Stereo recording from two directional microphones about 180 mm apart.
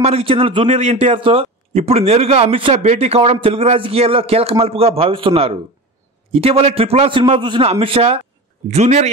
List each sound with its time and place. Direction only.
0.0 s a man's voice: 30° right (ahead or behind)